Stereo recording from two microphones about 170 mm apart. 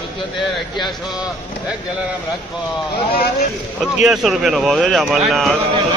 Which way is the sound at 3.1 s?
65° left (ahead or behind).